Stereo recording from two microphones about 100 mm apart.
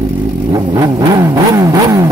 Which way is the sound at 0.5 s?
40° right (ahead or behind).